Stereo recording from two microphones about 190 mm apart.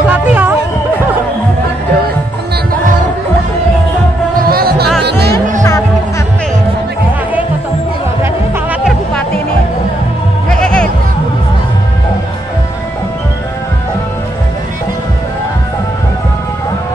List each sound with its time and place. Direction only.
0.1 s music: 10° right (ahead or behind)
4.4 s music: 55° right (ahead or behind)
10.6 s music: 5° left (ahead or behind)